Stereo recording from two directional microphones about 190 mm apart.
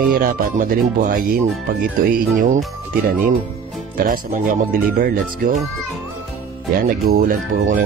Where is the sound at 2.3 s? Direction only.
40° right (ahead or behind).